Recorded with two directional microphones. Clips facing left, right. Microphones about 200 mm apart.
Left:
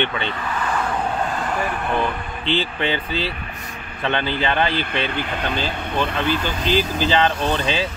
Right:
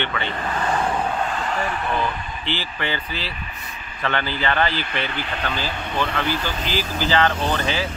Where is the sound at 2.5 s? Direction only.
20° left (ahead or behind).